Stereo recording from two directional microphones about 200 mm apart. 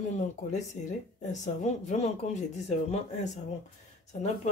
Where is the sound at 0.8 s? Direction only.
40° left (ahead or behind).